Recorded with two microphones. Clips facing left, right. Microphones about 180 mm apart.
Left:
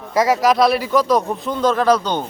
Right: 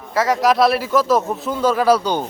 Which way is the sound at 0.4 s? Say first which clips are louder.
Even; centre (ahead or behind).